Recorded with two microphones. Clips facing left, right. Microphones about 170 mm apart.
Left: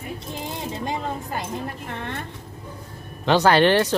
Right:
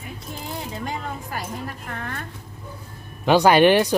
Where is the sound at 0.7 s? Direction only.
20° left (ahead or behind).